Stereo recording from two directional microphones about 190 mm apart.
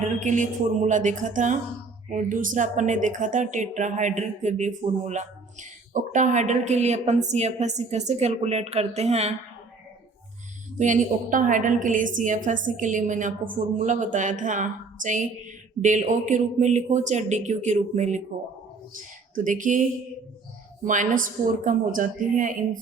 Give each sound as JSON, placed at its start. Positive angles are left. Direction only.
{"t": 0.2, "sound": "a woman's voice", "side_deg": -40}
{"t": 10.8, "sound": "a woman's voice", "side_deg": -40}
{"t": 20.8, "sound": "speech", "side_deg": -40}